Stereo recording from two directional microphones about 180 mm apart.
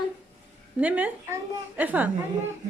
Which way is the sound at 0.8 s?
10° right (ahead or behind).